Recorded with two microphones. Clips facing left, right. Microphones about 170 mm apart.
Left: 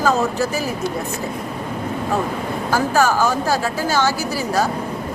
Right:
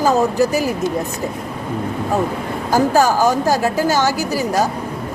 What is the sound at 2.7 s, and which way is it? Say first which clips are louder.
Speech: right 3 dB; 40° right (ahead or behind).